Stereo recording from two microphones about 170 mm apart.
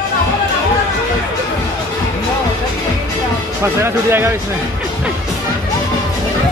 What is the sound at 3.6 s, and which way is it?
Speech, 15° right (ahead or behind).